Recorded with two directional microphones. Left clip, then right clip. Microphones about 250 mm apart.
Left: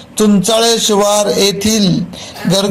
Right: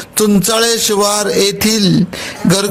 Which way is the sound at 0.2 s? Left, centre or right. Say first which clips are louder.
Left 1 dB; right.